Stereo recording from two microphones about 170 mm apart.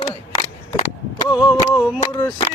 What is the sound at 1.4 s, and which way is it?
Chant, 20° left (ahead or behind).